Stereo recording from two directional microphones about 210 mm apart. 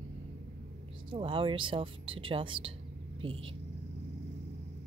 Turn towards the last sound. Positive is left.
turn(degrees=-25)  # may be behind; listen again after turning